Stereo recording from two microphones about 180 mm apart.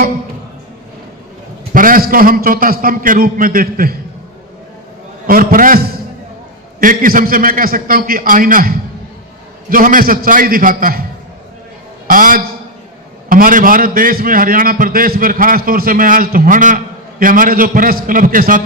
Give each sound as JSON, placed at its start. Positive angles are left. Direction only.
{"t": 1.7, "sound": "a man's voice", "side_deg": -50}
{"t": 5.2, "sound": "a man's voice", "side_deg": -55}
{"t": 12.0, "sound": "a man's voice", "side_deg": -50}